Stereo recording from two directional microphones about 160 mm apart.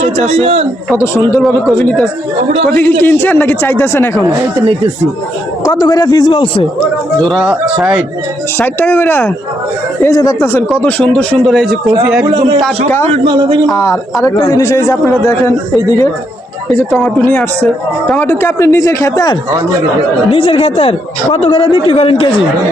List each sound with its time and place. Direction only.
0.0 s a man's voice: 40° right (ahead or behind)
0.9 s a man's voice: 15° left (ahead or behind)
1.4 s a man's voice: 5° left (ahead or behind)
5.6 s speech: 25° left (ahead or behind)
7.2 s a man's voice: centre (ahead or behind)
8.5 s a man's voice: 10° left (ahead or behind)
10.7 s a man's voice: 5° left (ahead or behind)
12.3 s speech: 30° right (ahead or behind)
13.7 s speech: 20° left (ahead or behind)
17.0 s a man's voice: 10° left (ahead or behind)
20.3 s speech: 35° left (ahead or behind)